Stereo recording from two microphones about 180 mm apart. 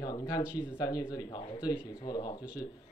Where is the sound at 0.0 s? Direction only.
20° left (ahead or behind).